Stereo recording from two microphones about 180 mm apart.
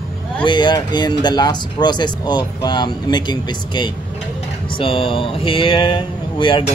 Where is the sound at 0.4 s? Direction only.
25° left (ahead or behind).